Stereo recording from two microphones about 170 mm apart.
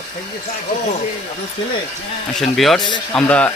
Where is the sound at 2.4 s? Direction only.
Centre (ahead or behind).